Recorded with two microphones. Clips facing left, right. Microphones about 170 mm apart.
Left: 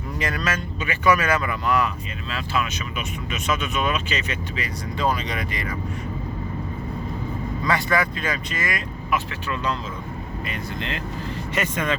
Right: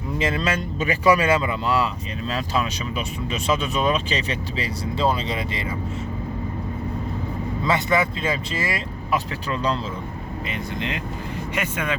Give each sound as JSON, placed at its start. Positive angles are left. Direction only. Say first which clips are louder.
{"t": 0.2, "sound": "speech", "louder": "right 3 dB", "side_deg": -25}
{"t": 7.6, "sound": "speech", "louder": "right 2 dB", "side_deg": -25}
{"t": 10.5, "sound": "speech", "louder": "right 3 dB", "side_deg": -20}